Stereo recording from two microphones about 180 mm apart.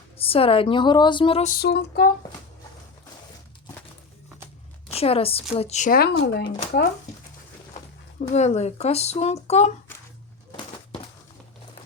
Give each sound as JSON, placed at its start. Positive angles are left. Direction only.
{"t": 0.2, "sound": "speech", "side_deg": 30}
{"t": 1.5, "sound": "female singing", "side_deg": 60}
{"t": 4.9, "sound": "speech", "side_deg": 35}
{"t": 6.0, "sound": "speech", "side_deg": 70}
{"t": 8.3, "sound": "speech", "side_deg": 40}